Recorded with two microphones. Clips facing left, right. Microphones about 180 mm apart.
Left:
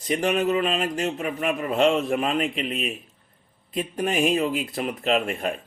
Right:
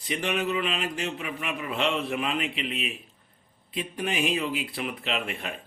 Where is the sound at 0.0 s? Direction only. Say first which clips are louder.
Left 6 dB; 45° left (ahead or behind).